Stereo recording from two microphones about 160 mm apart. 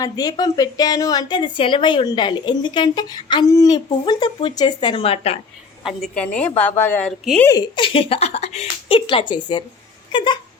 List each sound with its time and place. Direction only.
0.0 s a woman's voice: 25° left (ahead or behind)
5.8 s a woman's voice: 5° left (ahead or behind)
7.5 s a woman's voice: 30° left (ahead or behind)